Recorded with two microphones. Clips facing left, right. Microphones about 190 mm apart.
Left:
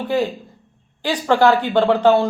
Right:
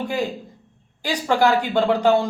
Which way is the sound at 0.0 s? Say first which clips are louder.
Left 4 dB; 10° right (ahead or behind).